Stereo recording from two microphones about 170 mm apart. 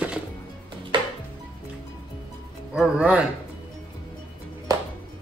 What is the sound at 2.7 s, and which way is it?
Music, 5° right (ahead or behind).